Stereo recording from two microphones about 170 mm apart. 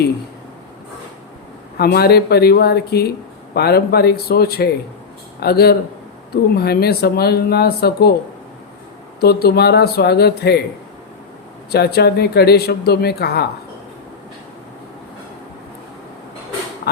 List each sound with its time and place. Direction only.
1.8 s speech: 65° left (ahead or behind)
9.2 s speech: 70° left (ahead or behind)
11.7 s speech: 70° left (ahead or behind)